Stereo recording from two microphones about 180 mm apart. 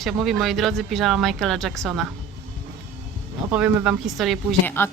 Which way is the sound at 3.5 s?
5° right (ahead or behind).